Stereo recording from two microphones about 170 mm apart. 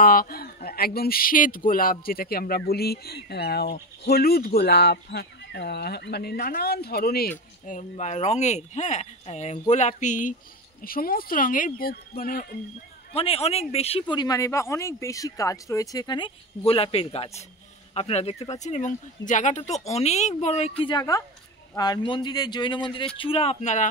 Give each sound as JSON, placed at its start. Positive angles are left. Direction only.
{"t": 0.0, "sound": "speech", "side_deg": 60}
{"t": 10.8, "sound": "speech", "side_deg": 60}
{"t": 13.1, "sound": "speech", "side_deg": 35}
{"t": 20.9, "sound": "speech", "side_deg": 20}